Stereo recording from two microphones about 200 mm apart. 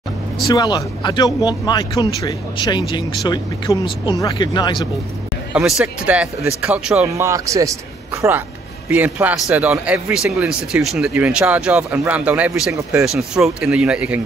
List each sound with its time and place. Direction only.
0.5 s speech: 20° left (ahead or behind)
5.5 s speech: 5° right (ahead or behind)